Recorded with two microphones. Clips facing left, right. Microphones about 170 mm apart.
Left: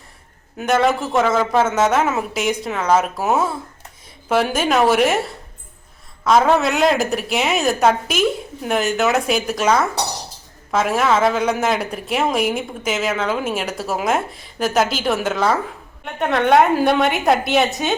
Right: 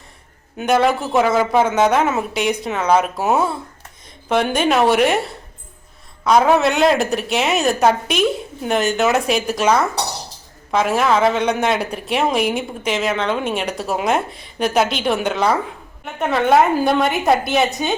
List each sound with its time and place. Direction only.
0.5 s speech: centre (ahead or behind)